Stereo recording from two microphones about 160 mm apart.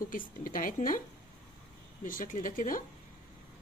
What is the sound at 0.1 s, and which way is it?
Speech, 60° left (ahead or behind).